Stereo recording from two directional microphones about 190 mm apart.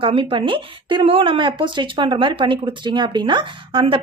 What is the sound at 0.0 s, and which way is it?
Speech, 30° right (ahead or behind).